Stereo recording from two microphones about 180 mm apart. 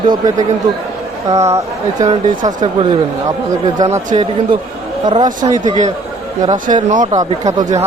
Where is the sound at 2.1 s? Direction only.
25° right (ahead or behind).